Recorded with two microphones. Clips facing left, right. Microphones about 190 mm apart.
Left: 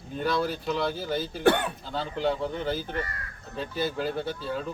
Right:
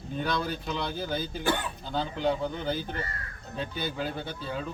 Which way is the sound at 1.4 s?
60° left (ahead or behind).